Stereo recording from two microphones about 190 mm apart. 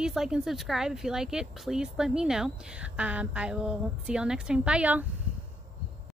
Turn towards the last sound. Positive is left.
turn(degrees=-5)  # may be behind; listen again after turning